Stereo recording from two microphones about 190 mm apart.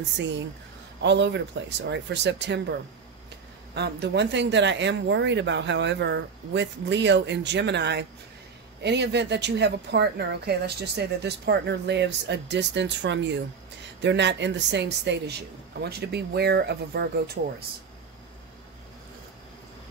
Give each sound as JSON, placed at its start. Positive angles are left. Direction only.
{"t": 0.2, "sound": "speech", "side_deg": -70}
{"t": 3.7, "sound": "speech", "side_deg": -60}